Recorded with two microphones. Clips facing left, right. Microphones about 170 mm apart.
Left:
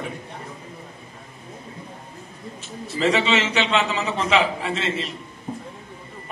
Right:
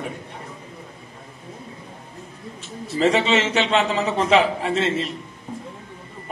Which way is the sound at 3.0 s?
45° right (ahead or behind).